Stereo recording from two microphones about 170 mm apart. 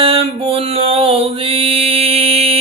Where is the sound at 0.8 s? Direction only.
35° right (ahead or behind).